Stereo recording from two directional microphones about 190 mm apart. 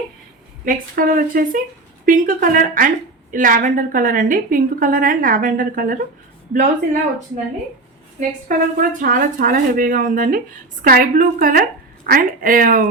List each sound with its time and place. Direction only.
0.6 s a woman's voice: 45° right (ahead or behind)
8.4 s a woman's voice: 45° right (ahead or behind)